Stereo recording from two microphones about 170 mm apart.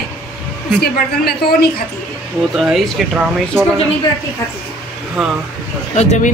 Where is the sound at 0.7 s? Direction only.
70° left (ahead or behind).